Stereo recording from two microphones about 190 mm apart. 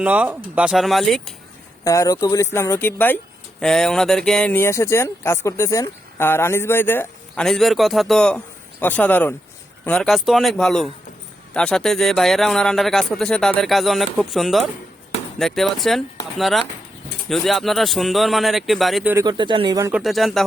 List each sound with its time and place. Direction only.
0.0 s speech: 5° right (ahead or behind)
1.8 s speech: 15° left (ahead or behind); by 19.1 s centre (ahead or behind)
19.1 s speech: 20° right (ahead or behind)
19.9 s speech: centre (ahead or behind)